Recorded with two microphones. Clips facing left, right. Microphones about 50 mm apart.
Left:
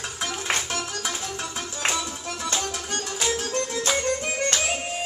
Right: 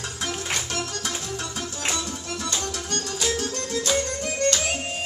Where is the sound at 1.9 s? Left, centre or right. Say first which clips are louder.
Left 2 dB; centre.